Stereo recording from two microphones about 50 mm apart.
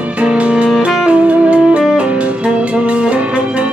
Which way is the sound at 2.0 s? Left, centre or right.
Right.